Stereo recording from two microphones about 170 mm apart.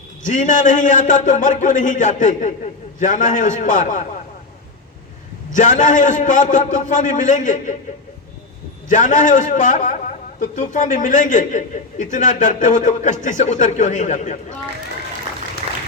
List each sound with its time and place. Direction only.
0.3 s a man's voice: 45° left (ahead or behind)
5.5 s a man's voice: 45° left (ahead or behind)
8.9 s a man's voice: 50° left (ahead or behind)